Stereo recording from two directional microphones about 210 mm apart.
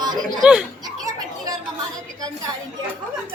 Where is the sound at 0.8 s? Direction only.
20° right (ahead or behind).